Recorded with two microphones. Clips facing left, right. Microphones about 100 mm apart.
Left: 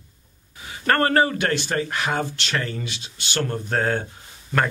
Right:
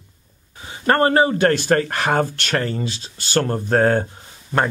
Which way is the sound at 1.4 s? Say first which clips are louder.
Right 7 dB; 45° right (ahead or behind).